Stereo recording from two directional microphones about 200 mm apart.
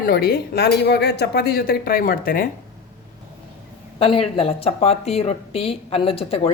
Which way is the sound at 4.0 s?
25° left (ahead or behind).